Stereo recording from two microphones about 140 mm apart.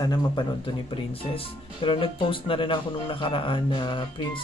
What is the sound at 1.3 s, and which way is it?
Speech, 40° left (ahead or behind).